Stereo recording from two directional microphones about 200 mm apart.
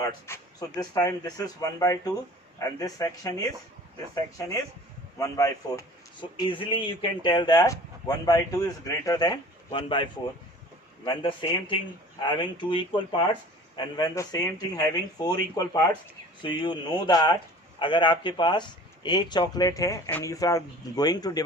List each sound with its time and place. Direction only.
0.3 s speech: 10° left (ahead or behind)